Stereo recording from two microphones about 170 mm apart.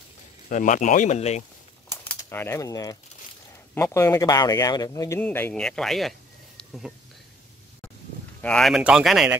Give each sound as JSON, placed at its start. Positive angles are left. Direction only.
{"t": 0.5, "sound": "speech", "side_deg": 50}
{"t": 1.9, "sound": "typewriter", "side_deg": 15}
{"t": 3.7, "sound": "speech", "side_deg": 15}
{"t": 8.4, "sound": "speech", "side_deg": 5}